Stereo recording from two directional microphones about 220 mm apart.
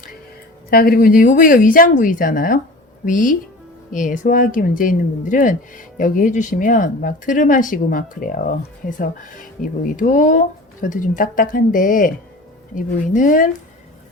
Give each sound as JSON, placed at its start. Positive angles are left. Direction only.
{"t": 0.7, "sound": "speech", "side_deg": 40}